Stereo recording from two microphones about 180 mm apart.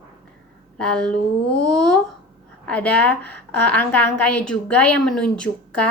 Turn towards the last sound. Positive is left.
turn(degrees=5)  # may be behind; listen again after turning